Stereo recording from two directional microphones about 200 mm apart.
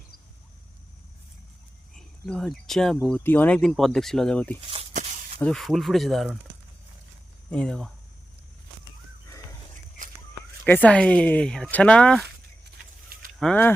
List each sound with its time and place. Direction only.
2.0 s speech: centre (ahead or behind)
4.7 s a sound: 30° right (ahead or behind)
5.4 s speech: 5° left (ahead or behind)
7.5 s speech: 5° left (ahead or behind)
10.7 s speech: 10° left (ahead or behind)
12.6 s a sound: 50° right (ahead or behind)
13.4 s speech: 5° left (ahead or behind)